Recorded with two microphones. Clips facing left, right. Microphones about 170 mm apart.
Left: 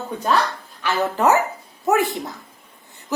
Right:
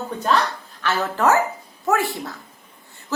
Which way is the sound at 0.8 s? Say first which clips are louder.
Left 1 dB; 15° left (ahead or behind).